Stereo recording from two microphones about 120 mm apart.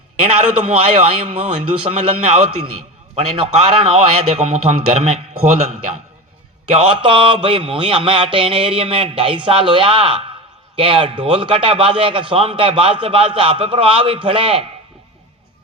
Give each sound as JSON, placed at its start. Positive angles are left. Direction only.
{"t": 0.2, "sound": "a man's voice", "side_deg": -65}
{"t": 6.7, "sound": "a man's voice", "side_deg": -55}